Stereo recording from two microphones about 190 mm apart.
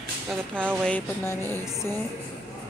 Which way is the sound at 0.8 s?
10° left (ahead or behind).